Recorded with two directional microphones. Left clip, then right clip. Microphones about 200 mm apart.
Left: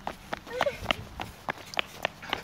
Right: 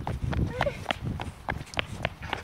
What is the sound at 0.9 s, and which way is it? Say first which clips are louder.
Walk: left 1 dB; centre (ahead or behind).